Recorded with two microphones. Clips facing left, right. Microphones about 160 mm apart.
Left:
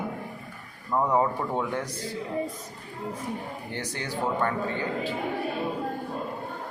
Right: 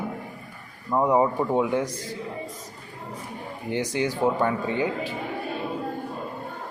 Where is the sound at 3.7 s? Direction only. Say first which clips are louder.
Right 9 dB; 15° right (ahead or behind).